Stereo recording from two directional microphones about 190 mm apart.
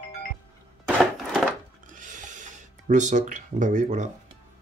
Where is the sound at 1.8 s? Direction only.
40° right (ahead or behind).